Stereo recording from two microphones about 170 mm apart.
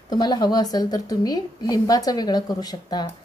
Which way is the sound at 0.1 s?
25° left (ahead or behind).